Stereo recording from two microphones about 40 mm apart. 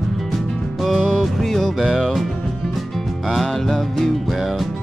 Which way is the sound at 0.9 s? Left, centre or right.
Left.